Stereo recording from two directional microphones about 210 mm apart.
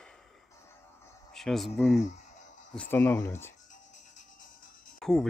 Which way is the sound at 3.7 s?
35° left (ahead or behind).